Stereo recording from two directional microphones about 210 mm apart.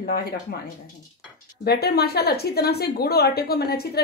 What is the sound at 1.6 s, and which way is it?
A woman's voice, 50° left (ahead or behind).